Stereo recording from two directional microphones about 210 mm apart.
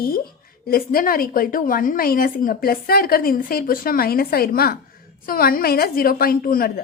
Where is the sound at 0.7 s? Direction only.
45° left (ahead or behind).